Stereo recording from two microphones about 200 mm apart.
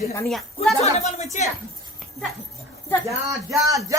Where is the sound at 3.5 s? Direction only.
15° right (ahead or behind).